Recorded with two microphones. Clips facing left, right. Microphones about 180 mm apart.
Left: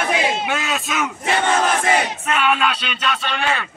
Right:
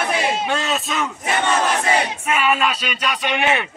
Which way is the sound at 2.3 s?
5° right (ahead or behind).